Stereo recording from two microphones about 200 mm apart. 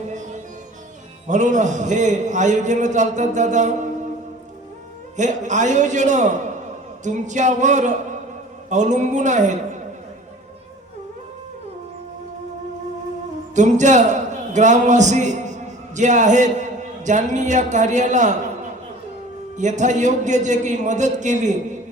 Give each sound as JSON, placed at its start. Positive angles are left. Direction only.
{"t": 1.3, "sound": "a man's voice", "side_deg": -40}
{"t": 5.1, "sound": "a man's voice", "side_deg": -35}
{"t": 13.6, "sound": "a man's voice", "side_deg": -35}
{"t": 19.5, "sound": "a man's voice", "side_deg": -35}